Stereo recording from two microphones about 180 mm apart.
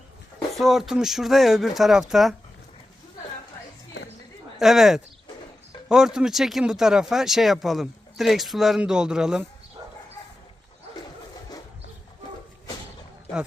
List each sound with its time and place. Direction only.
0.5 s speech: centre (ahead or behind)
4.0 s a sound: 70° left (ahead or behind)
4.6 s speech: centre (ahead or behind)